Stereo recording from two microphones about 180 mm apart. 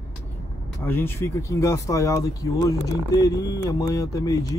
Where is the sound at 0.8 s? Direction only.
10° left (ahead or behind).